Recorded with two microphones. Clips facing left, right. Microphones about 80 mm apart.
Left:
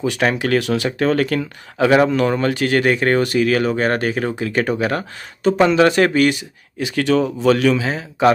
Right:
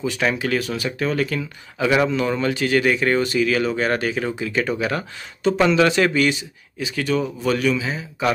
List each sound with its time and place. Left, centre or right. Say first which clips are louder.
0.0 s speech: left 3 dB; left